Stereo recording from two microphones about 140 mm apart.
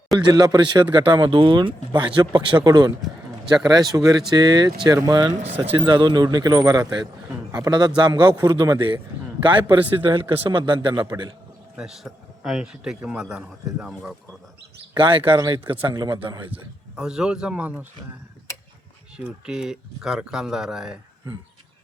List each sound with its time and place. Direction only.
0.2 s speech: 30° right (ahead or behind)
5.3 s speech: 55° right (ahead or behind)
5.6 s speech: 40° right (ahead or behind)
11.8 s a man's voice: 5° right (ahead or behind)
14.9 s speech: 35° right (ahead or behind)
16.5 s speech: 5° right (ahead or behind)
19.1 s a man's voice: 5° right (ahead or behind)